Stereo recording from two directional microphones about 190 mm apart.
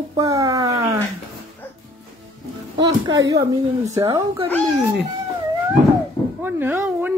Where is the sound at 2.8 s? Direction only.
20° right (ahead or behind).